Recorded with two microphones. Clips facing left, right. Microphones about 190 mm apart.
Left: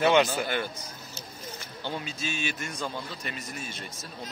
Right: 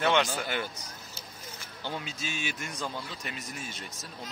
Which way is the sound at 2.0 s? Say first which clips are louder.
Left 3 dB; 15° right (ahead or behind).